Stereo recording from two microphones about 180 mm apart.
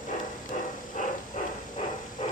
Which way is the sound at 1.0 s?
45° left (ahead or behind).